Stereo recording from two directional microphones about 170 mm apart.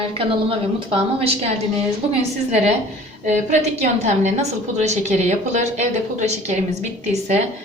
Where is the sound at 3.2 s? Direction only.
45° right (ahead or behind).